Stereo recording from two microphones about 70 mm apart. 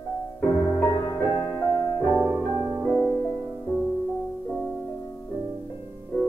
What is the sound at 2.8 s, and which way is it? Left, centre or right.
Music, centre.